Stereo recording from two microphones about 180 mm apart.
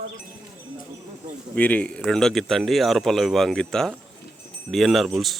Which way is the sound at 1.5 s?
10° left (ahead or behind).